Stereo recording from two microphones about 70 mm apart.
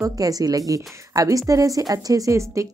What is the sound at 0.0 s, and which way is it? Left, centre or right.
Speech, right.